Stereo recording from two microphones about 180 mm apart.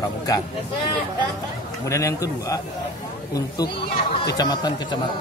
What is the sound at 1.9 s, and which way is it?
A man's voice, 15° left (ahead or behind).